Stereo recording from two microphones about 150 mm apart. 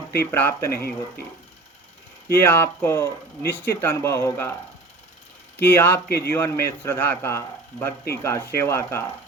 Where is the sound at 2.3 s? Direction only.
15° left (ahead or behind).